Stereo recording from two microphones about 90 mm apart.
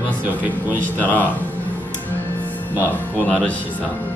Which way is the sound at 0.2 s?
20° right (ahead or behind).